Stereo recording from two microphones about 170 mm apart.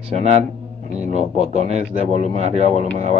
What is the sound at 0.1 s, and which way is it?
Speech, 40° right (ahead or behind).